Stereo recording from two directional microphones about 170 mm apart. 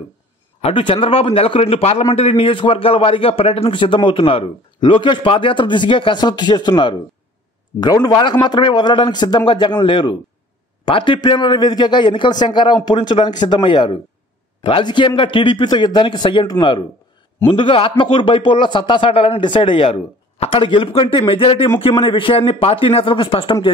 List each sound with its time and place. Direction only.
0.6 s a man's voice: 30° left (ahead or behind)